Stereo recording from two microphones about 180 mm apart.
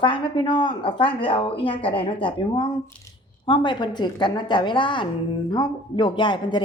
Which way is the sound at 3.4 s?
25° left (ahead or behind).